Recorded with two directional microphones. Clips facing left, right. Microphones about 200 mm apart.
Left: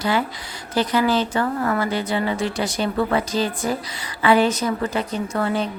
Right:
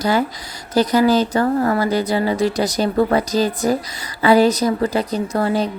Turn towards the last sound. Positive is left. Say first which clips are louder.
# right 4 dB
turn(degrees=-35)  # may be behind; listen again after turning